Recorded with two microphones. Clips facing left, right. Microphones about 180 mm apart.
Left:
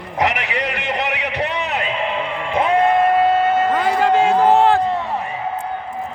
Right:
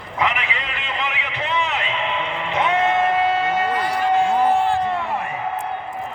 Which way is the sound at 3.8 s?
90° left.